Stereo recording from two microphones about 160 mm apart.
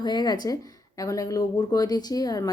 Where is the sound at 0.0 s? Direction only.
25° left (ahead or behind).